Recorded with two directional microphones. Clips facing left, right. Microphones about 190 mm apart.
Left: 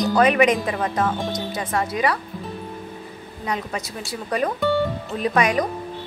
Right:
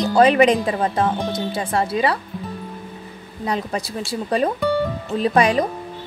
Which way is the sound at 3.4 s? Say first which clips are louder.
Right 3 dB; 30° right (ahead or behind).